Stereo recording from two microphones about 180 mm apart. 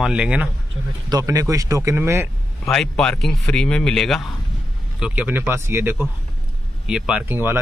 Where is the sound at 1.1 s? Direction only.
20° right (ahead or behind).